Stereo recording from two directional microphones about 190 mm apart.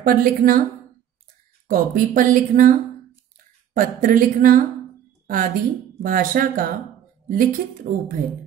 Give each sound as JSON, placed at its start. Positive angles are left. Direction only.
{"t": 0.0, "sound": "speech", "side_deg": -50}
{"t": 1.7, "sound": "speech", "side_deg": -45}
{"t": 3.7, "sound": "speech", "side_deg": -45}
{"t": 5.2, "sound": "a sound", "side_deg": -45}
{"t": 6.0, "sound": "speech", "side_deg": -45}